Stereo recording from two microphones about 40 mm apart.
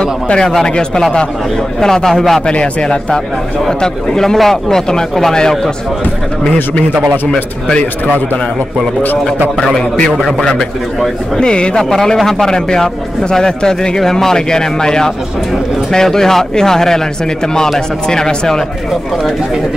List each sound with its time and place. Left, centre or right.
0.0 s a man's voice: left
2.4 s a man's voice: left
10.4 s speech: centre
11.8 s a man's voice: centre